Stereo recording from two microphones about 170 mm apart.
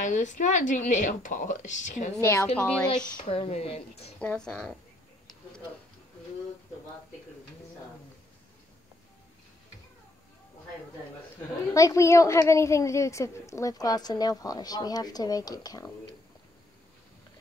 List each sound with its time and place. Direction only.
0.0 s speech: 45° left (ahead or behind)
2.2 s a woman's voice: 10° left (ahead or behind)
3.3 s speech: 35° left (ahead or behind)
4.2 s a woman's voice: 5° left (ahead or behind)
11.7 s a woman's voice: 20° left (ahead or behind)